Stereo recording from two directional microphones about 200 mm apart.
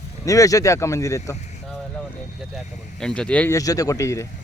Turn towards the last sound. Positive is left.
turn(degrees=15)  # may be behind; listen again after turning